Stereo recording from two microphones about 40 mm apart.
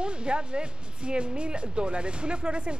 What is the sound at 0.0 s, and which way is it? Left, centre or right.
Speech, right.